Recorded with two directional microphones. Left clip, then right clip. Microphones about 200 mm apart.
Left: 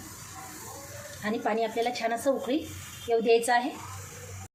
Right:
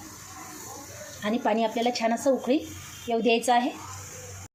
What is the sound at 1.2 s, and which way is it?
A woman's voice, 30° right (ahead or behind).